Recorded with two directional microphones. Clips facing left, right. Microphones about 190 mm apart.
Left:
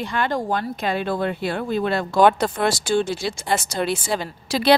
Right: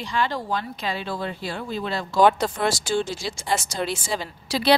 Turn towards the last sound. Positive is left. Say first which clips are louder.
# left 3 dB
turn(degrees=50)  # may be behind; listen again after turning